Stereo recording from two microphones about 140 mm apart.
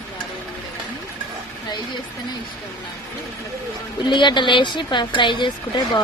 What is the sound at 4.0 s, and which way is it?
A woman's voice, 35° left (ahead or behind).